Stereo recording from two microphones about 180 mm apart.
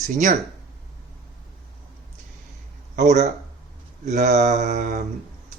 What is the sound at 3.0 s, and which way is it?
Speech, 40° right (ahead or behind).